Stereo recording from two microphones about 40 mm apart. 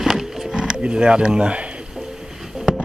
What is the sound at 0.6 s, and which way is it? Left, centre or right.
Speech, right.